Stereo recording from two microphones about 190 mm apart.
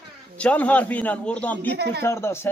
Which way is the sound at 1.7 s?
60° right (ahead or behind).